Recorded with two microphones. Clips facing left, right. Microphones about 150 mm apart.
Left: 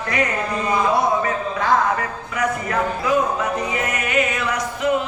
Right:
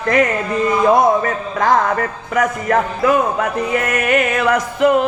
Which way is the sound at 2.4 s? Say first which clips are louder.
Right 5 dB; 50° right (ahead or behind).